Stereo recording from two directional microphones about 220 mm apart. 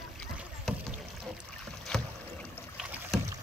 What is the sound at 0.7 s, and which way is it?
Rowboat, centre (ahead or behind).